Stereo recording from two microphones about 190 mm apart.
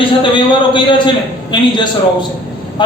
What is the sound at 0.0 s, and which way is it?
A man's voice, 25° left (ahead or behind).